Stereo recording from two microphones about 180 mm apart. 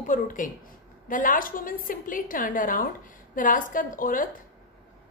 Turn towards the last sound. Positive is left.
turn(degrees=50)  # may be behind; listen again after turning